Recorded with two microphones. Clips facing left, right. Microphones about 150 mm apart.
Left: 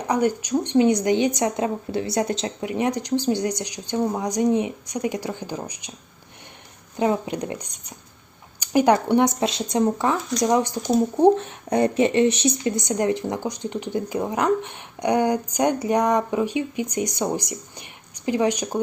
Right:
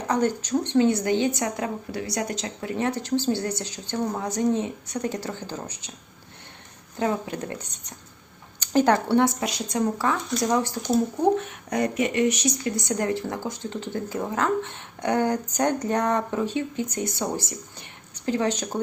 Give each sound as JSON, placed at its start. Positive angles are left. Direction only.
{"t": 0.1, "sound": "speech", "side_deg": 10}
{"t": 6.9, "sound": "speech", "side_deg": 20}
{"t": 11.2, "sound": "speech", "side_deg": 30}